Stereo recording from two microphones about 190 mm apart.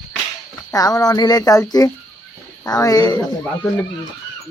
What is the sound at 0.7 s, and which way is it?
Speech, 20° left (ahead or behind).